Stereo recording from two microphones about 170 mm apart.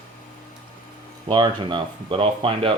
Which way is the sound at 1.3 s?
25° right (ahead or behind).